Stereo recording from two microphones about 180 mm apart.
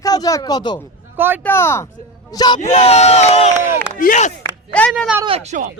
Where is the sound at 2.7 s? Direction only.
35° left (ahead or behind).